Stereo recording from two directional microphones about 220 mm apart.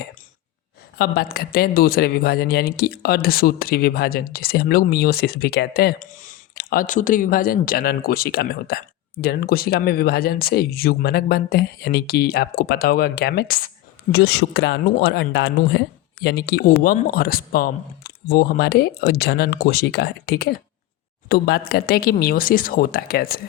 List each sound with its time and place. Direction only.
0.9 s speech: 45° left (ahead or behind)